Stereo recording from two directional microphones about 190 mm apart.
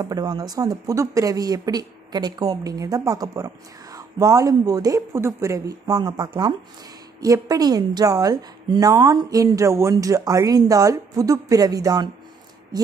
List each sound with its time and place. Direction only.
0.0 s speech: 20° right (ahead or behind)